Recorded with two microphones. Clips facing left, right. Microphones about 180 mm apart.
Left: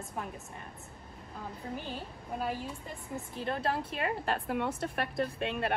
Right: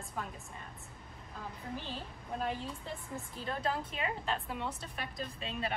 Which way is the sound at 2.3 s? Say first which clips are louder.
Left 2 dB; 5° left (ahead or behind).